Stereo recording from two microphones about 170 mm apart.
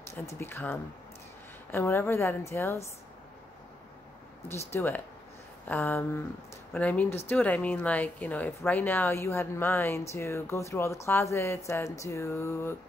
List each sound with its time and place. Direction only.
0.1 s speech: 15° left (ahead or behind)
4.7 s speech: 15° left (ahead or behind)